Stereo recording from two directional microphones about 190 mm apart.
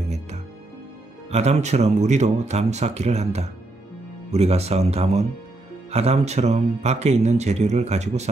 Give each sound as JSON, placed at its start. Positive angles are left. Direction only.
{"t": 1.3, "sound": "speech", "side_deg": -35}